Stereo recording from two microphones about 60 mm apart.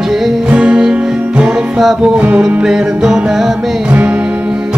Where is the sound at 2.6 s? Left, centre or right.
Centre.